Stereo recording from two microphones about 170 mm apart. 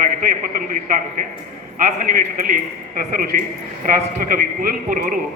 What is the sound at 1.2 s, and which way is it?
A man's voice, 55° right (ahead or behind).